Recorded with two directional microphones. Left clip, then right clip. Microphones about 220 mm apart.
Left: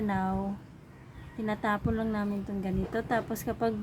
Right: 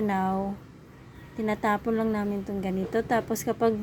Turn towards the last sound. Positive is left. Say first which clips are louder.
# right 5 dB
turn(degrees=-15)  # may be behind; listen again after turning